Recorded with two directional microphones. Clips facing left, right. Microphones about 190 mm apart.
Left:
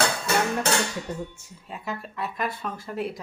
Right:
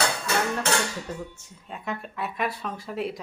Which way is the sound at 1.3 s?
5° left (ahead or behind).